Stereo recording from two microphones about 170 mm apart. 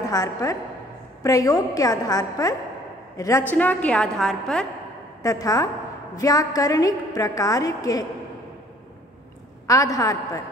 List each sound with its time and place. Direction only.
0.1 s a woman's voice: 20° left (ahead or behind); by 4.6 s 5° left (ahead or behind)
5.2 s a woman's voice: 20° left (ahead or behind)
9.7 s a woman's voice: 20° left (ahead or behind)